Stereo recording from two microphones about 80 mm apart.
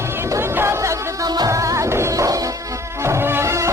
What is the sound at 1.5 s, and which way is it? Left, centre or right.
Music, right.